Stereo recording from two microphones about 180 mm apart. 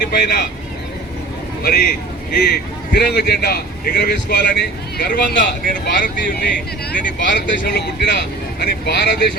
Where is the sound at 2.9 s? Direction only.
60° left (ahead or behind).